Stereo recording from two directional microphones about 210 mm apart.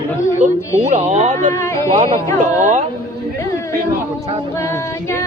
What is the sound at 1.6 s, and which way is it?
Speech, 15° left (ahead or behind).